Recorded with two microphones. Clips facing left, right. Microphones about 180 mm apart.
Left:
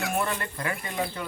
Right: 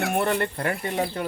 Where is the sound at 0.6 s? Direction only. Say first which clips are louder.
Right 5 dB; 40° right (ahead or behind).